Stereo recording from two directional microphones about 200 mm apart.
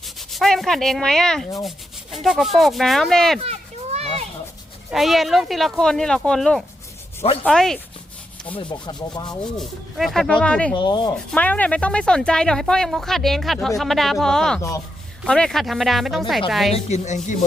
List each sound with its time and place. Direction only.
0.0 s rub: centre (ahead or behind)
1.6 s speech: centre (ahead or behind)
3.4 s children playing: 30° right (ahead or behind)
4.9 s speech: centre (ahead or behind)
8.5 s speech: 20° left (ahead or behind)
9.4 s speech: centre (ahead or behind)
10.8 s speech: 20° left (ahead or behind)
11.3 s speech: 5° left (ahead or behind)
16.7 s a woman's voice: 35° left (ahead or behind)